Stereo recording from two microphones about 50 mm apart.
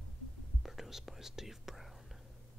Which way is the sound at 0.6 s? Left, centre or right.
Centre.